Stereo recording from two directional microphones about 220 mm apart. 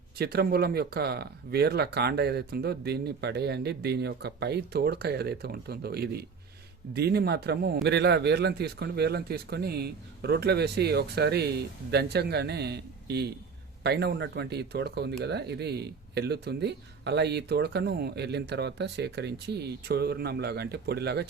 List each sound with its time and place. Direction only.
0.2 s speech: 45° right (ahead or behind)